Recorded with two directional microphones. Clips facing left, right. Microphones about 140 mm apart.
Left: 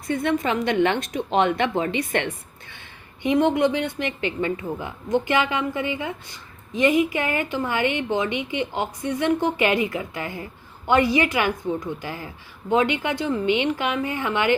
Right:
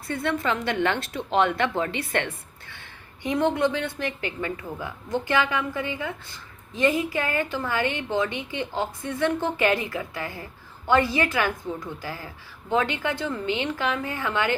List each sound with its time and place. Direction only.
0.1 s a woman's voice: 20° left (ahead or behind)